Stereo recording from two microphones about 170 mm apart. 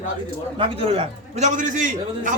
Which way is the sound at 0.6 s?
35° right (ahead or behind).